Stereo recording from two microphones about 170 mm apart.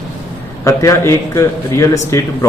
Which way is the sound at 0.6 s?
20° left (ahead or behind).